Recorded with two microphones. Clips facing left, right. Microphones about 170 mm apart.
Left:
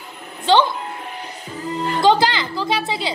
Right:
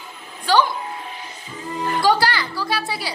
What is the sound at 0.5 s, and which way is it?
Music, 25° left (ahead or behind).